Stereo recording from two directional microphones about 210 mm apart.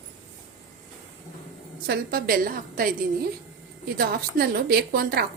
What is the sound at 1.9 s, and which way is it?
A woman's voice, 45° right (ahead or behind).